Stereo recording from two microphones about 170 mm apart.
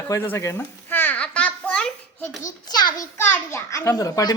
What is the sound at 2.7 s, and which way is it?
A child's voice, 25° left (ahead or behind).